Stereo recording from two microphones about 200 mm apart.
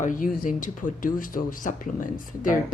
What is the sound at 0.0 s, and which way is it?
Speech, 45° left (ahead or behind).